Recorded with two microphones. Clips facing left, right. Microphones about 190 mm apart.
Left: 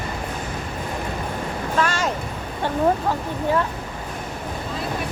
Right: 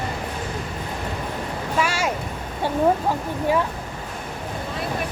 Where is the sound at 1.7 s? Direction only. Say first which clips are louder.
Left 1 dB; 10° right (ahead or behind).